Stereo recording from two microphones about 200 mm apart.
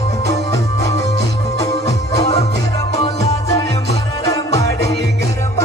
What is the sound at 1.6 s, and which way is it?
Music, 30° left (ahead or behind).